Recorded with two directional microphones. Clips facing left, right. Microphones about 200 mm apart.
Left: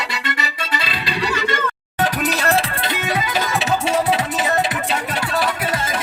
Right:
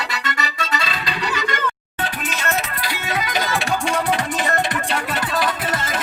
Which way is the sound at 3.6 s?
5° left (ahead or behind).